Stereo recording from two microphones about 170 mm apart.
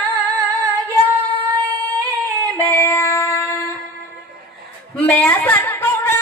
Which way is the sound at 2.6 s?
10° left (ahead or behind).